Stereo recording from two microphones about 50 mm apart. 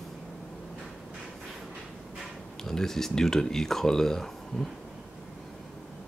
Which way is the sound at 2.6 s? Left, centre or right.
Centre.